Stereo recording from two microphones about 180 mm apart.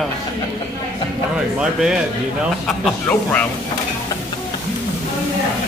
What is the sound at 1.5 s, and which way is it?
Speech, 5° right (ahead or behind).